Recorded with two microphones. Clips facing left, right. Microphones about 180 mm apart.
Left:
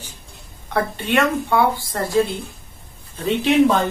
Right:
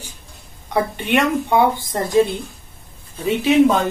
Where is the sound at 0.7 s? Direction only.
15° right (ahead or behind).